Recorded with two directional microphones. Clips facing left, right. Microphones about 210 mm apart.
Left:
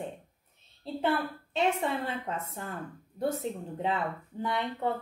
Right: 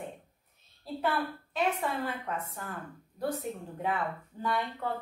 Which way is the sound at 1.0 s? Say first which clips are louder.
Left 2 dB; 25° left (ahead or behind).